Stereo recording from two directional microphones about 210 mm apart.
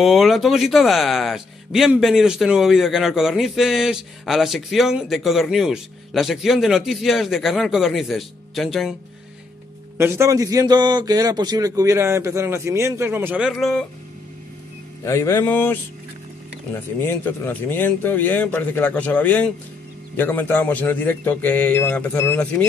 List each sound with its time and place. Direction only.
0.0 s speech: centre (ahead or behind)
9.9 s a man's voice: 10° right (ahead or behind)
15.0 s speech: 15° left (ahead or behind)